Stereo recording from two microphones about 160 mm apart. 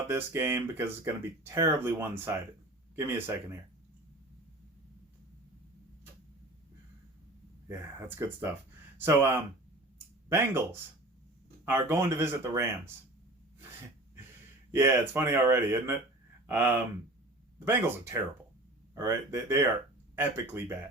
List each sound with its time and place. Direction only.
0.1 s speech: 15° right (ahead or behind)
7.7 s speech: 15° right (ahead or behind)
14.7 s speech: 15° right (ahead or behind)